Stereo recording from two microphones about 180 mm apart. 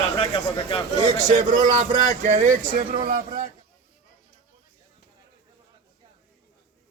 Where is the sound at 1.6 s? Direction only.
40° right (ahead or behind).